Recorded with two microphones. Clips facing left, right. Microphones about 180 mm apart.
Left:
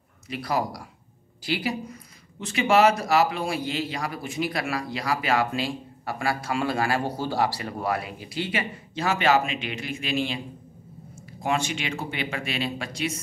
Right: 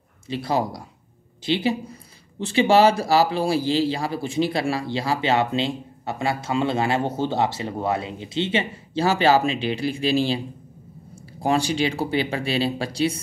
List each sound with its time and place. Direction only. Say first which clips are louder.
0.3 s speech: right 3 dB; 25° right (ahead or behind)
11.4 s speech: right 6 dB; 35° right (ahead or behind)